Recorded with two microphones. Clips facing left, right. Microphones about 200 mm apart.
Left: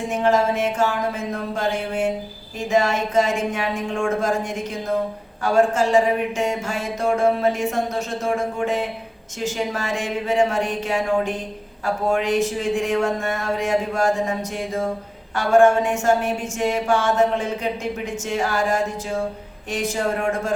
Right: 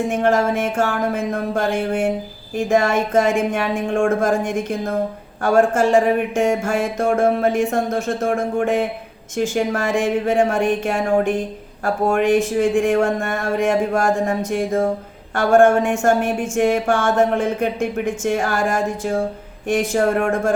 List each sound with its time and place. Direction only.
0.1 s a woman's voice: 50° right (ahead or behind)